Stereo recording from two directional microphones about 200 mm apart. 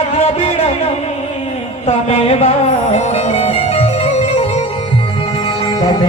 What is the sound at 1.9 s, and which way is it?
Music, 30° left (ahead or behind).